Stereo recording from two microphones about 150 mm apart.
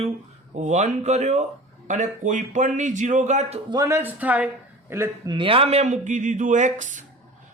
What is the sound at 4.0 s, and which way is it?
Speech, 10° right (ahead or behind).